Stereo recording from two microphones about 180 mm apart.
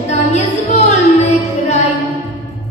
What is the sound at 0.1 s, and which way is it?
Music, 40° left (ahead or behind).